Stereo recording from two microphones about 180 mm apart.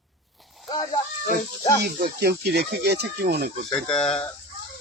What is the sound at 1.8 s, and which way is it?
Speech, 60° right (ahead or behind).